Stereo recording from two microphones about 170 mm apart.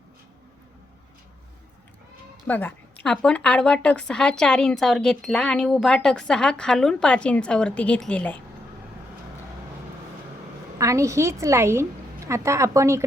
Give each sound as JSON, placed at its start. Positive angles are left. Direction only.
{"t": 2.5, "sound": "a woman's voice", "side_deg": 10}
{"t": 10.8, "sound": "a woman's voice", "side_deg": -20}